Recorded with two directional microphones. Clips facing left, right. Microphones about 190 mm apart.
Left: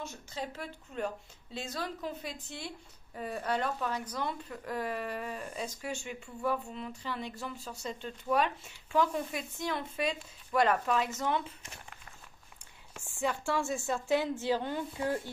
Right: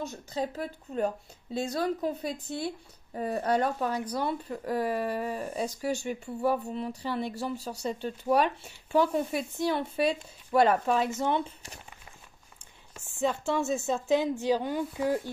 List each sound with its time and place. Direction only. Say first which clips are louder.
0.0 s a woman's voice: right 7 dB; 35° right (ahead or behind)
13.2 s a woman's voice: right 4 dB; 20° right (ahead or behind)